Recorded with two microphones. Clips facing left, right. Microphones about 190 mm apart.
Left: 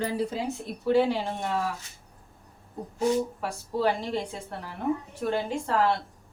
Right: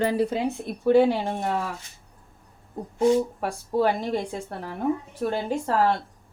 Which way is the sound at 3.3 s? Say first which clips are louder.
Right 5 dB; 50° right (ahead or behind).